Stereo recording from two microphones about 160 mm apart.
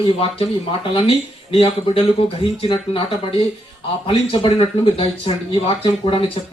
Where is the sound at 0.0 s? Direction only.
35° left (ahead or behind).